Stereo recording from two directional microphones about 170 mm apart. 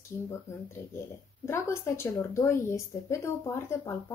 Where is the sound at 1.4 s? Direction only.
15° left (ahead or behind).